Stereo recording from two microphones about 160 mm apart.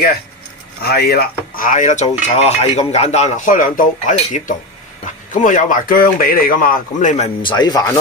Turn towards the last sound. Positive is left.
turn(degrees=25)  # may be behind; listen again after turning